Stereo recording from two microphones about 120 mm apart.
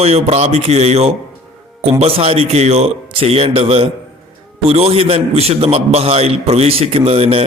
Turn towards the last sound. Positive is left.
turn(degrees=-55)  # may be behind; listen again after turning